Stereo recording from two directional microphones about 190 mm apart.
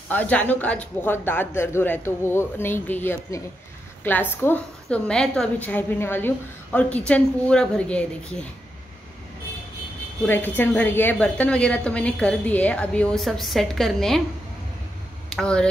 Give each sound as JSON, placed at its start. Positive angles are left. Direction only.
{"t": 0.1, "sound": "a woman's voice", "side_deg": 10}
{"t": 10.2, "sound": "a woman's voice", "side_deg": 10}
{"t": 15.2, "sound": "speech", "side_deg": 5}